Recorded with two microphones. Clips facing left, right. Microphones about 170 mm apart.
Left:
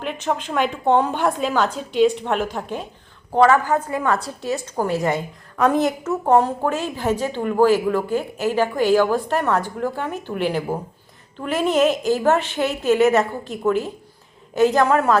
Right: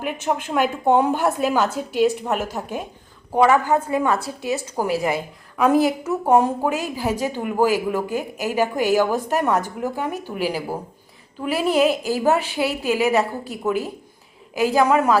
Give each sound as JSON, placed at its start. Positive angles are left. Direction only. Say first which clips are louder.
{"t": 0.0, "sound": "a woman's voice", "louder": "even", "side_deg": -10}
{"t": 4.5, "sound": "a woman's voice", "louder": "even", "side_deg": -5}